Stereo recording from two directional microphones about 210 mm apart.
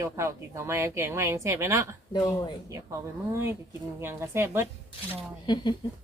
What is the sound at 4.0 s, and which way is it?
Speech, 10° right (ahead or behind).